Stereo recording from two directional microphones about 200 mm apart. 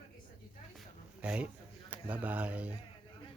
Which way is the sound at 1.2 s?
5° right (ahead or behind).